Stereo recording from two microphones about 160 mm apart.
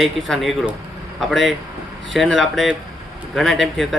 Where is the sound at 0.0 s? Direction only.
Centre (ahead or behind).